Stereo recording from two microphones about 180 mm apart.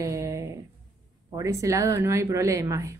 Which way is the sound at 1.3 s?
15° right (ahead or behind).